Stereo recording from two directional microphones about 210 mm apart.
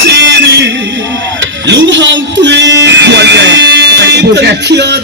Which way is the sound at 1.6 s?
60° right (ahead or behind).